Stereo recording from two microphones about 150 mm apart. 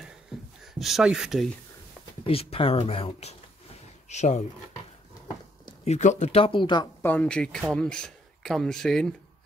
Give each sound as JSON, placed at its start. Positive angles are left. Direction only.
{"t": 0.7, "sound": "speech", "side_deg": 0}
{"t": 2.2, "sound": "speech", "side_deg": 40}
{"t": 5.9, "sound": "speech", "side_deg": 50}
{"t": 7.0, "sound": "speech", "side_deg": 10}